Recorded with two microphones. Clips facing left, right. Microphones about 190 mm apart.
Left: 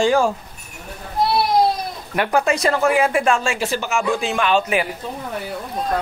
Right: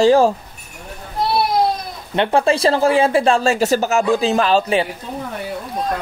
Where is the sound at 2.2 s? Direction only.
30° right (ahead or behind).